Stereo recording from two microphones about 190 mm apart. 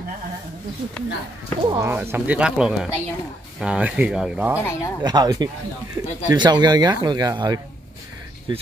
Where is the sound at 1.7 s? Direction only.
10° right (ahead or behind).